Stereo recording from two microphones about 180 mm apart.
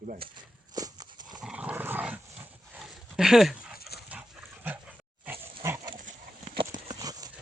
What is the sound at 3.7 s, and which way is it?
Dog, 60° left (ahead or behind).